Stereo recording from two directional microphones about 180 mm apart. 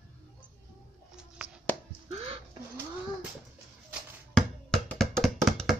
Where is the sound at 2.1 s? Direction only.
35° right (ahead or behind).